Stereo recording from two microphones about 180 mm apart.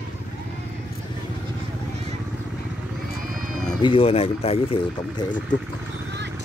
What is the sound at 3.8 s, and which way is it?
Speech, 30° left (ahead or behind).